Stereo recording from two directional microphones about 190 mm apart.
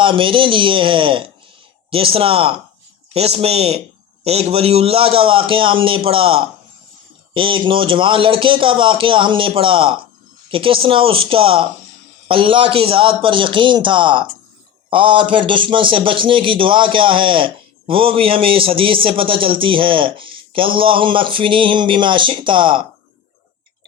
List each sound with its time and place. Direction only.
0.0 s a man's voice: 25° right (ahead or behind)